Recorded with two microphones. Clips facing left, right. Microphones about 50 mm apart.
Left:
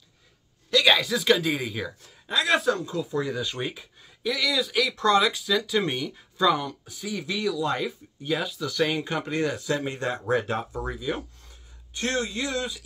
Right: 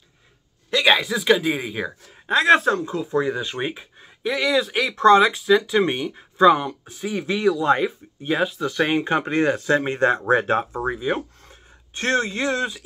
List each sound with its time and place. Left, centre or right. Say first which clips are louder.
0.7 s speech: right 2 dB; right
2.2 s speech: right 7 dB; right